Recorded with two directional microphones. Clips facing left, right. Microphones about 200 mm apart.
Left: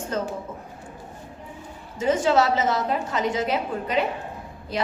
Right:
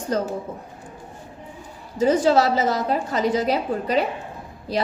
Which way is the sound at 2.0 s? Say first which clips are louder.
Right 3 dB; 35° right (ahead or behind).